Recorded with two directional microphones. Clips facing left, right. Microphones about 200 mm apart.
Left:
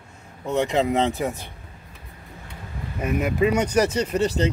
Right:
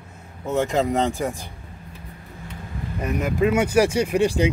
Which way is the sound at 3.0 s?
5° left (ahead or behind).